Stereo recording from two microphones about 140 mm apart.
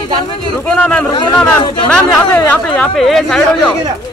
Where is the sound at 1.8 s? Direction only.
5° left (ahead or behind).